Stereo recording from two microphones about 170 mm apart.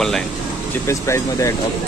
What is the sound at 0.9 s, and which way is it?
Speech, 15° left (ahead or behind).